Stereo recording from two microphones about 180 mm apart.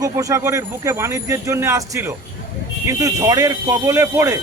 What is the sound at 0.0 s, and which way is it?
Speech, 20° right (ahead or behind).